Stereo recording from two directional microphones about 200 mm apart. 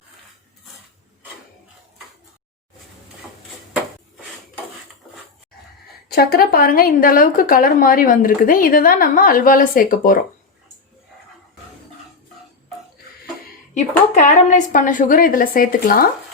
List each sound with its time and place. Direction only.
6.1 s a woman's voice: 50° left (ahead or behind)
14.1 s a woman's voice: 35° left (ahead or behind)